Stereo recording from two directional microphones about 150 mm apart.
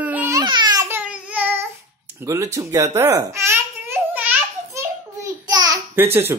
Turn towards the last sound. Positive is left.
turn(degrees=-15)  # may be behind; listen again after turning